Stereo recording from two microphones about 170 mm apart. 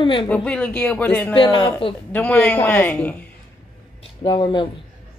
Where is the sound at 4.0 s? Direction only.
30° left (ahead or behind).